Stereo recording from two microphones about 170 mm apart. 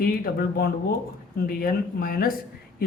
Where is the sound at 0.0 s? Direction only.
60° left (ahead or behind).